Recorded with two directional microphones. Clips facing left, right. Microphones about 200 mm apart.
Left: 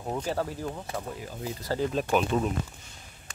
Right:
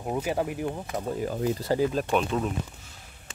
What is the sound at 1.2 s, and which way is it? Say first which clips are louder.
Speech: right 9 dB; 55° right (ahead or behind).